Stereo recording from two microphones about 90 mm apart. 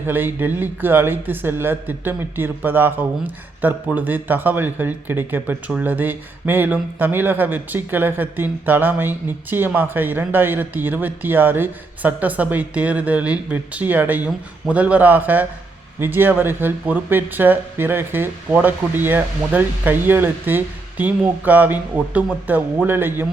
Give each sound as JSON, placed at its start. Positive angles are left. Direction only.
{"t": 0.0, "sound": "speech", "side_deg": -25}